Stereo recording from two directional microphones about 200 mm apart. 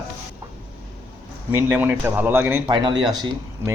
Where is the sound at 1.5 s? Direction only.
10° right (ahead or behind).